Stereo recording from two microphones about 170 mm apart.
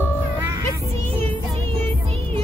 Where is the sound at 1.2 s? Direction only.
10° left (ahead or behind).